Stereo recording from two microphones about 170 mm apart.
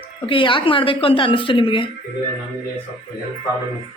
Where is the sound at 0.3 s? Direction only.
30° left (ahead or behind).